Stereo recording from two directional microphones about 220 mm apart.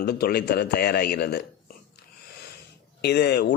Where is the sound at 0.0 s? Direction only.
45° left (ahead or behind).